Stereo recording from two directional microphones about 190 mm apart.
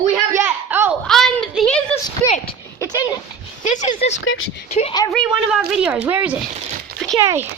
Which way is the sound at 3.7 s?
40° left (ahead or behind).